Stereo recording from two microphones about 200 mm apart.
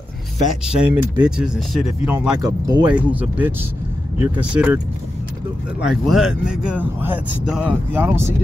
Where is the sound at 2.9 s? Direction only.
5° right (ahead or behind).